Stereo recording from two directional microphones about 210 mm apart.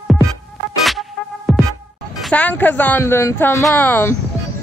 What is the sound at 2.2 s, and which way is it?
A woman's voice, 5° left (ahead or behind).